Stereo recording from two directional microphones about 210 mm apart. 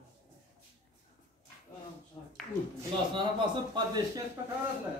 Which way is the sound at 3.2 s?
20° right (ahead or behind).